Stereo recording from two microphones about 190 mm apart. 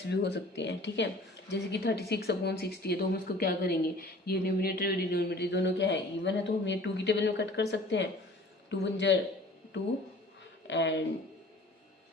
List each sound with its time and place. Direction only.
0.1 s speech: 60° left (ahead or behind)
10.7 s speech: 65° left (ahead or behind)